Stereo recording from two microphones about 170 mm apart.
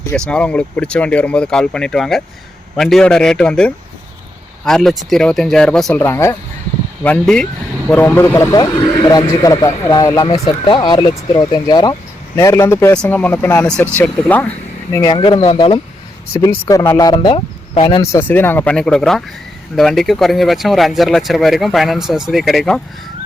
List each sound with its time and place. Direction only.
0.1 s speech: 5° left (ahead or behind)
6.0 s speech: 15° left (ahead or behind)
14.9 s speech: 25° left (ahead or behind)
16.3 s speech: 20° left (ahead or behind)
18.0 s speech: 15° left (ahead or behind)